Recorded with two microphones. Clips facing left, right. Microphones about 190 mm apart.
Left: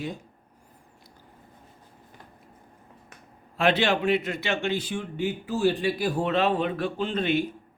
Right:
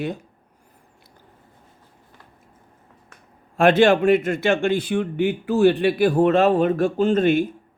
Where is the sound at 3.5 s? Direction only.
50° right (ahead or behind).